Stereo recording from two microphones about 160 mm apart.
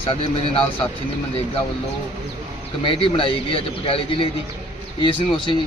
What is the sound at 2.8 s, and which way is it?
A man's voice, 35° left (ahead or behind).